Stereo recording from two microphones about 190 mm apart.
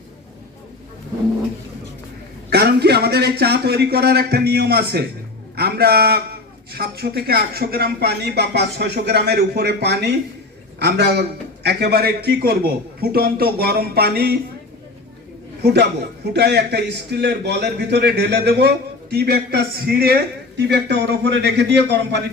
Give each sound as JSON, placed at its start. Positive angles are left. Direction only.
{"t": 2.5, "sound": "a man's voice", "side_deg": -55}
{"t": 15.6, "sound": "a man's voice", "side_deg": -60}